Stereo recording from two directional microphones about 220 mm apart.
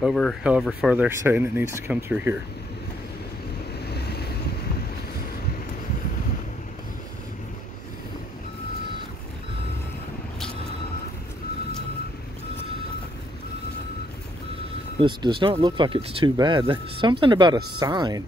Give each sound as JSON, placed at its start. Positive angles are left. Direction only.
{"t": 0.0, "sound": "speech", "side_deg": 0}
{"t": 3.8, "sound": "waves", "side_deg": 45}
{"t": 15.0, "sound": "speech", "side_deg": -20}